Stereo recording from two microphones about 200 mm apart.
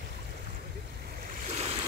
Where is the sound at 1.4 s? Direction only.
30° right (ahead or behind).